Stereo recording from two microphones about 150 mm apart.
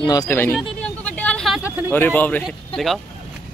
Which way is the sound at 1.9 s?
10° left (ahead or behind).